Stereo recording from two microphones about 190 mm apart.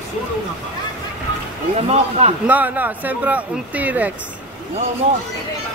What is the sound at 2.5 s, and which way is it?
Speech, 10° right (ahead or behind).